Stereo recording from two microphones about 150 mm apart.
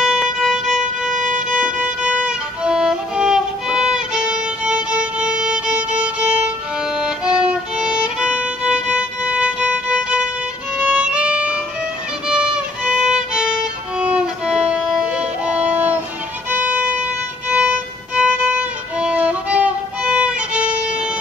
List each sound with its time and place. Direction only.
0.0 s violin: 5° right (ahead or behind)
1.1 s violin: 60° right (ahead or behind)
1.6 s violin: 10° right (ahead or behind)
10.8 s music: 5° right (ahead or behind)
12.3 s violin: 5° right (ahead or behind)
13.9 s music: 10° right (ahead or behind)
16.4 s violin: 10° right (ahead or behind)